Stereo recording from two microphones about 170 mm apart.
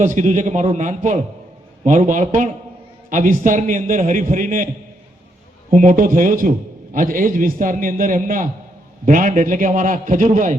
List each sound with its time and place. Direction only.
0.0 s a man's voice: 45° right (ahead or behind)
5.7 s a man's voice: 55° right (ahead or behind)